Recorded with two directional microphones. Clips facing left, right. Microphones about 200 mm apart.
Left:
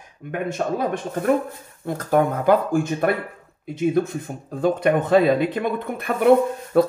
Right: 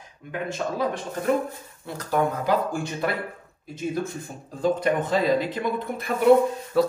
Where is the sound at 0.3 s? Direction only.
55° left (ahead or behind).